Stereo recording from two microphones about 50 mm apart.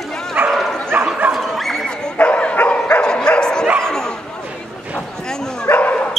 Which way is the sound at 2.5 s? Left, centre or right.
Left.